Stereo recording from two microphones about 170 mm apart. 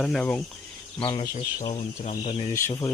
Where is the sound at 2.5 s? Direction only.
15° left (ahead or behind).